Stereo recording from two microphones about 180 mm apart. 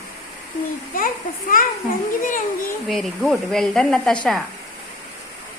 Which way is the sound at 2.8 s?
Centre (ahead or behind).